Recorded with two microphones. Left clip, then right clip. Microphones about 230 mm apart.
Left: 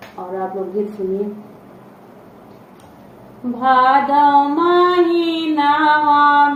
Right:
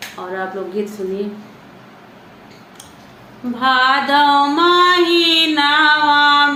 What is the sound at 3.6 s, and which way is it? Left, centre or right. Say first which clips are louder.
Music: left 1 dB; right.